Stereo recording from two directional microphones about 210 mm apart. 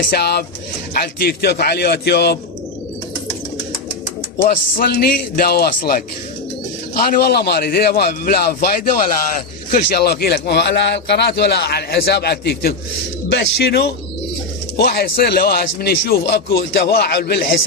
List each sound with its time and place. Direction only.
0.1 s a man's voice: 50° left (ahead or behind)
4.4 s a man's voice: 45° left (ahead or behind)